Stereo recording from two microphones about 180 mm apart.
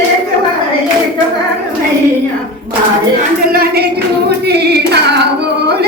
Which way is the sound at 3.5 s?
55° right (ahead or behind).